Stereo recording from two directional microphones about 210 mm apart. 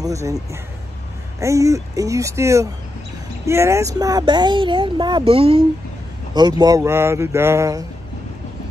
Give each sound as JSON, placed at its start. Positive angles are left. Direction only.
{"t": 0.0, "sound": "speech", "side_deg": -15}